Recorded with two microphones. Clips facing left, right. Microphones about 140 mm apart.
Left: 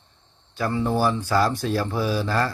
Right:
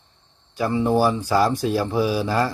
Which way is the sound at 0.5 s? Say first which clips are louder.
Right 4 dB; 15° right (ahead or behind).